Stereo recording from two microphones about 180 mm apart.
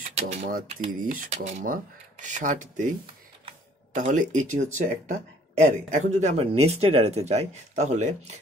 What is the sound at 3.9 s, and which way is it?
Speech, 45° right (ahead or behind).